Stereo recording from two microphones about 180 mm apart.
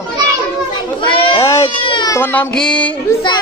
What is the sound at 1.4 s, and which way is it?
Baby cry, 15° left (ahead or behind).